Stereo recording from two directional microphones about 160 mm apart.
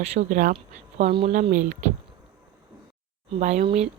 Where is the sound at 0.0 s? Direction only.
40° right (ahead or behind).